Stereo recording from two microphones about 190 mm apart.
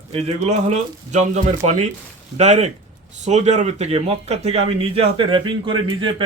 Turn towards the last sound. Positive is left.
turn(degrees=-25)  # may be behind; listen again after turning